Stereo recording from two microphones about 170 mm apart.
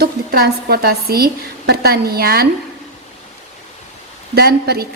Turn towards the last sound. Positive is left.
turn(degrees=-65)  # may be behind; listen again after turning